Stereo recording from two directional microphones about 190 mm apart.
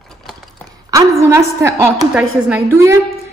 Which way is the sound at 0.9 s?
15° right (ahead or behind).